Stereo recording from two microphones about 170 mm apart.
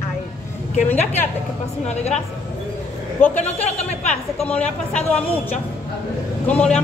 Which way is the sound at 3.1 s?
10° left (ahead or behind).